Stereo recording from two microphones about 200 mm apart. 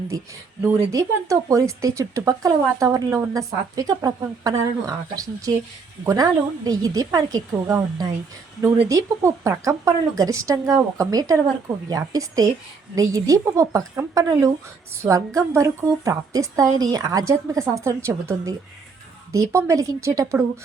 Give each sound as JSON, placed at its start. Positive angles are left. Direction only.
{"t": 0.1, "sound": "speech", "side_deg": -15}